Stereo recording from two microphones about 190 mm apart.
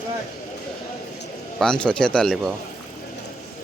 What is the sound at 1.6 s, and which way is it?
Speech, 5° left (ahead or behind).